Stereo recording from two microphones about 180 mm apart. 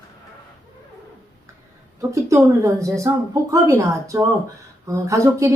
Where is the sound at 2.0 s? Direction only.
15° right (ahead or behind).